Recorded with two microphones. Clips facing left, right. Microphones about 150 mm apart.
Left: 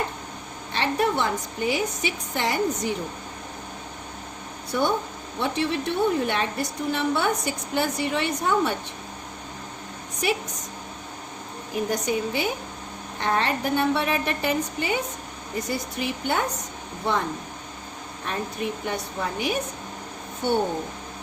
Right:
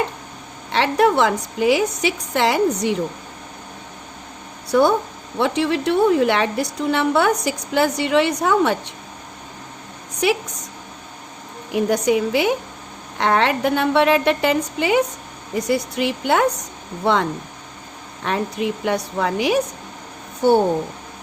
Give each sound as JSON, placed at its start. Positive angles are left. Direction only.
{"t": 0.7, "sound": "a woman's voice", "side_deg": -90}
{"t": 4.7, "sound": "a woman's voice", "side_deg": -80}
{"t": 11.7, "sound": "a woman's voice", "side_deg": -75}